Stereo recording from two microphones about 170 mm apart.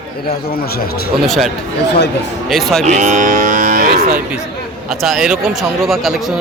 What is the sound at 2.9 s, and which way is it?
Speech, 45° right (ahead or behind).